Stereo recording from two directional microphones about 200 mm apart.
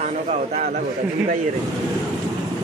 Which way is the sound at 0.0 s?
35° right (ahead or behind).